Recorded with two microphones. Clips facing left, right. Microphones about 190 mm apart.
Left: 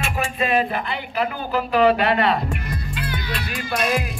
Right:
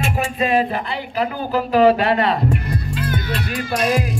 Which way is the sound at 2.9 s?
45° right (ahead or behind).